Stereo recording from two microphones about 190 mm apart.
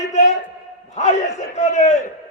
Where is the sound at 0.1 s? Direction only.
40° left (ahead or behind).